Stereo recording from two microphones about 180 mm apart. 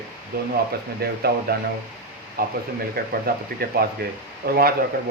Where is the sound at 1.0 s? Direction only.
60° right (ahead or behind).